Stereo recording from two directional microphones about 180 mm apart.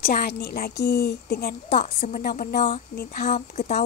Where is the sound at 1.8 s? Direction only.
45° left (ahead or behind).